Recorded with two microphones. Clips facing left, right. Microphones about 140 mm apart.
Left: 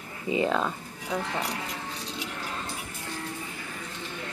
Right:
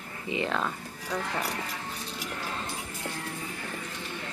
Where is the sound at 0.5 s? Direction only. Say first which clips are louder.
Left 3 dB; 10° left (ahead or behind).